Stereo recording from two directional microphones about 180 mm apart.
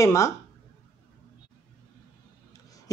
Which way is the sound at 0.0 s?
15° left (ahead or behind).